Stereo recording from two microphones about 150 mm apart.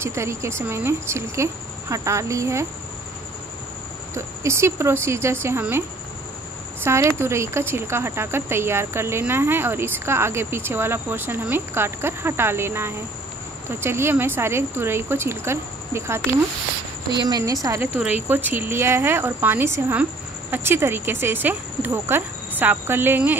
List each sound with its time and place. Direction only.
0.0 s speech: 20° right (ahead or behind)
4.1 s speech: 20° right (ahead or behind)
17.3 s speech: 25° right (ahead or behind)